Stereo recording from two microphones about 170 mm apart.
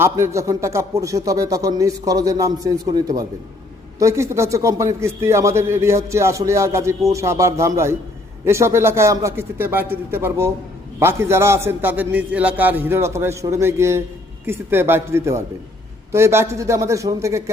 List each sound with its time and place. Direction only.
0.0 s a man's voice: 15° right (ahead or behind)